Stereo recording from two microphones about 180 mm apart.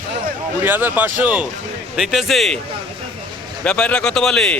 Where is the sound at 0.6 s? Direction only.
10° right (ahead or behind).